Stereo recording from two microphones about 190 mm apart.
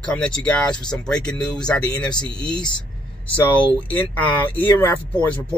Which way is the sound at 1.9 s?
20° left (ahead or behind).